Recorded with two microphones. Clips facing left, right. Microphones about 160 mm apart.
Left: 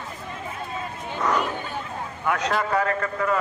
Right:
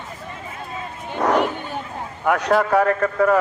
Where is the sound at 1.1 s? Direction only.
55° right (ahead or behind).